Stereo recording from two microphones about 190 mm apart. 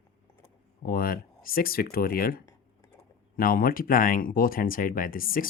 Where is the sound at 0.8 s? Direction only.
50° left (ahead or behind).